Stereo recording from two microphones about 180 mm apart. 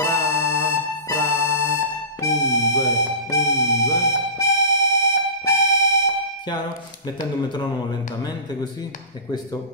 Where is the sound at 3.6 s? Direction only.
15° left (ahead or behind).